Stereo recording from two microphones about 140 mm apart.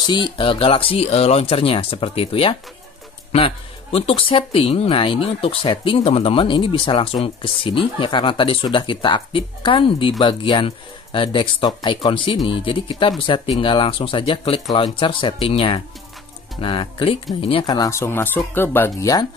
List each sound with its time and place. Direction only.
0.0 s speech: 35° left (ahead or behind)
17.7 s speech: 20° left (ahead or behind)